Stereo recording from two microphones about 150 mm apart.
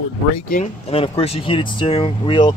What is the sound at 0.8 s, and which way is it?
Speech, 40° left (ahead or behind).